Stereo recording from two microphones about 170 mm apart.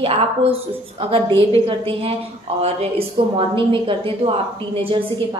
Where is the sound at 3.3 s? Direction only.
30° right (ahead or behind).